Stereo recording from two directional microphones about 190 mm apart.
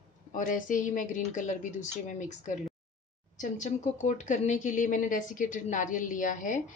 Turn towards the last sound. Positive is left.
turn(degrees=40)  # may be behind; listen again after turning